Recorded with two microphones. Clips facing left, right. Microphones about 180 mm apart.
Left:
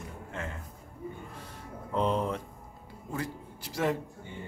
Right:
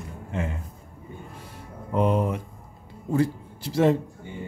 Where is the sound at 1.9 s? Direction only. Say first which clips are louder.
Right 5 dB; 10° right (ahead or behind).